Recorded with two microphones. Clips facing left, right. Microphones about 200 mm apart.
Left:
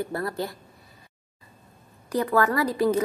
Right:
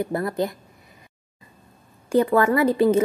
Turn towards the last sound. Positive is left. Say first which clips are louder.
# right 5 dB
turn(degrees=-25)  # may be behind; listen again after turning